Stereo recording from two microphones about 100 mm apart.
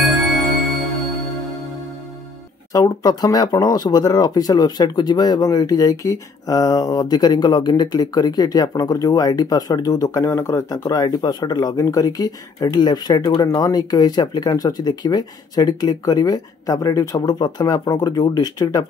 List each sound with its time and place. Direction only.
2.7 s speech: 35° left (ahead or behind)